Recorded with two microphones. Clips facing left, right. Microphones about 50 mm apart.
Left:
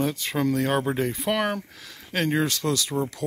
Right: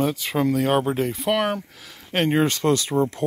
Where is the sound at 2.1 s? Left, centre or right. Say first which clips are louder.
Right 4 dB; right.